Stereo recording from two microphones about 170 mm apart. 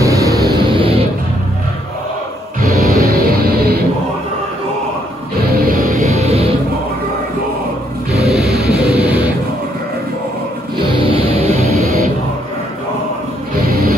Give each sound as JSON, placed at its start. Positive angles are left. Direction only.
{"t": 0.0, "sound": "music", "side_deg": -20}
{"t": 2.6, "sound": "music", "side_deg": -60}
{"t": 5.7, "sound": "music", "side_deg": -55}
{"t": 6.0, "sound": "music", "side_deg": -40}
{"t": 8.2, "sound": "music", "side_deg": 0}
{"t": 10.8, "sound": "music", "side_deg": -30}